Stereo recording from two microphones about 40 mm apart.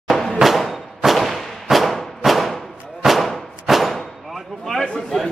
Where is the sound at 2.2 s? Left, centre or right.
Centre.